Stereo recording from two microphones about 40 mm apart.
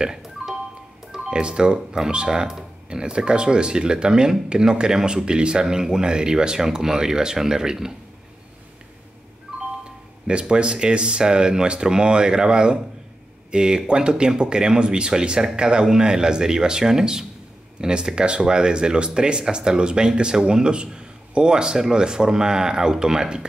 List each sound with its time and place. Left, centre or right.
0.0 s music: centre
1.1 s speech: right
10.2 s speech: right